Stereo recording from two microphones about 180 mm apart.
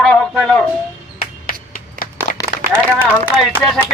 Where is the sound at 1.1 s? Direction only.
50° left (ahead or behind).